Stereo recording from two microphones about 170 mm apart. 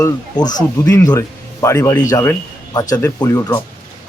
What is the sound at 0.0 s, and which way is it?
Speech, 25° left (ahead or behind).